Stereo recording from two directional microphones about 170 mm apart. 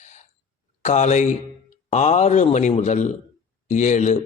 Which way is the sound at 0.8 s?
45° left (ahead or behind).